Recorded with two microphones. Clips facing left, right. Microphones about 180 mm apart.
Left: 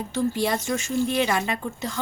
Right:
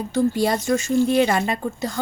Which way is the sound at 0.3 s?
40° right (ahead or behind).